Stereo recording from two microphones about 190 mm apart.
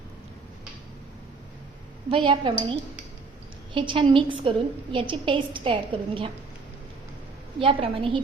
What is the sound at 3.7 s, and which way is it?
A woman's voice, 25° right (ahead or behind).